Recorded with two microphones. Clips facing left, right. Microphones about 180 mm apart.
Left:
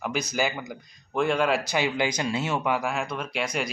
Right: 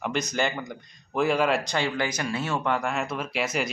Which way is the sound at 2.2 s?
20° left (ahead or behind).